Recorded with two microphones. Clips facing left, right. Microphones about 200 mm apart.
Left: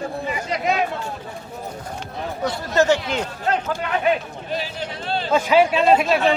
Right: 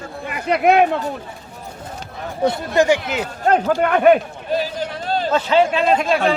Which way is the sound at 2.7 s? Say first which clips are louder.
Left 1 dB; 10° right (ahead or behind).